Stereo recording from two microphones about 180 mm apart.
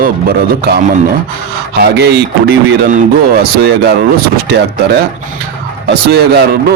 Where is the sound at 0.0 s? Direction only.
55° right (ahead or behind).